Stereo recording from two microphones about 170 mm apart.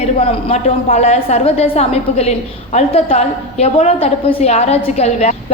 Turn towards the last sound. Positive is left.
turn(degrees=40)  # may be behind; listen again after turning